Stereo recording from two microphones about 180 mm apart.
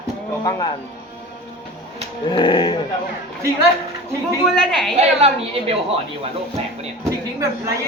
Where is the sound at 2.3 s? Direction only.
25° left (ahead or behind).